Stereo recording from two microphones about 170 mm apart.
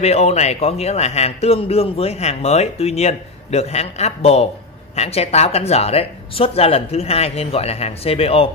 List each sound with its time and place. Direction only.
0.0 s a man's voice: 40° left (ahead or behind)